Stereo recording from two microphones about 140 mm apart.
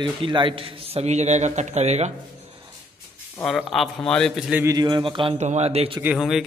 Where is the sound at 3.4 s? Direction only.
Centre (ahead or behind).